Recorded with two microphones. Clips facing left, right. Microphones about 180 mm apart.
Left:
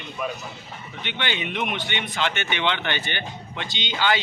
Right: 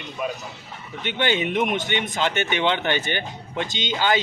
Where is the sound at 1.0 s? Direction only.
45° right (ahead or behind).